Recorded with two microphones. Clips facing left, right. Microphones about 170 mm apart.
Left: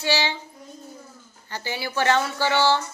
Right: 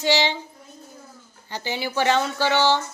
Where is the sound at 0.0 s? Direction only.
20° right (ahead or behind).